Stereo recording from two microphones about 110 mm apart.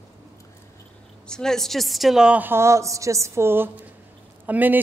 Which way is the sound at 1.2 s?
5° left (ahead or behind).